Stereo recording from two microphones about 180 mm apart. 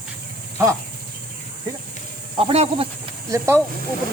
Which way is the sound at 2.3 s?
30° right (ahead or behind).